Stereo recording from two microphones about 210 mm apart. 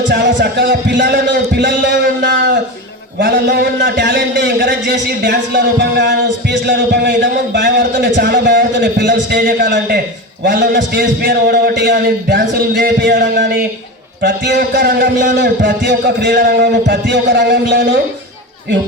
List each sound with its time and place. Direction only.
0.1 s a man's voice: 55° right (ahead or behind)